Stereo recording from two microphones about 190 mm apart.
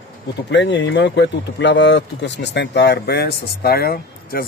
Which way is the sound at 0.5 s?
70° left (ahead or behind).